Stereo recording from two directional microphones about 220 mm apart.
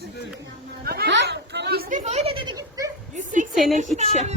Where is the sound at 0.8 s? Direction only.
45° right (ahead or behind); by 2.9 s 15° right (ahead or behind).